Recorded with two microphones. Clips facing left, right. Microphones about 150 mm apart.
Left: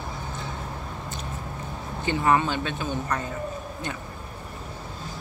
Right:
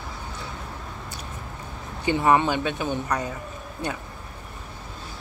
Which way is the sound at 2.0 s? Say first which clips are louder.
Right 2 dB; 15° right (ahead or behind).